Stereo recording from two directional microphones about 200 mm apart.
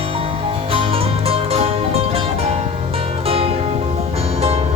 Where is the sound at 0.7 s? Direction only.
30° right (ahead or behind).